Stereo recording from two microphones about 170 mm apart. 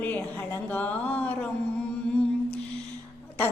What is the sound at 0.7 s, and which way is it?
Speech, 10° left (ahead or behind).